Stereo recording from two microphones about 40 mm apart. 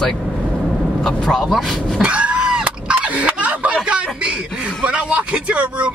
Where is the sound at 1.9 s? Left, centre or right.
Right.